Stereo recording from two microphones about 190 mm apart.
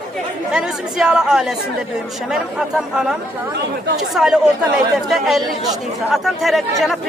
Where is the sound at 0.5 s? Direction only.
5° right (ahead or behind).